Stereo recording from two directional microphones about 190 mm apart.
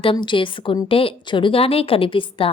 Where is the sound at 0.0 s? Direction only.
25° left (ahead or behind).